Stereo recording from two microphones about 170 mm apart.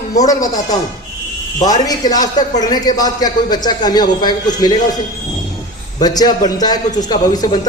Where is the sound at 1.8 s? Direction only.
20° left (ahead or behind).